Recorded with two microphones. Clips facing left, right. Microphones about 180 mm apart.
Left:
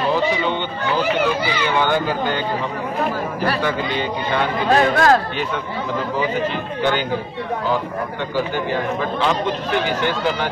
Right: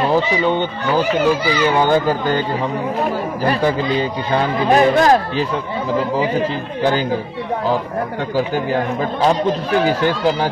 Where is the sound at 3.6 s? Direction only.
35° right (ahead or behind).